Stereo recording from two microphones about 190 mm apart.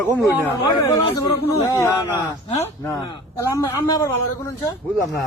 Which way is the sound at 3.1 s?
15° left (ahead or behind).